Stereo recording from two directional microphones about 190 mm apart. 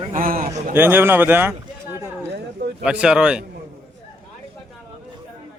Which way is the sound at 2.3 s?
55° right (ahead or behind).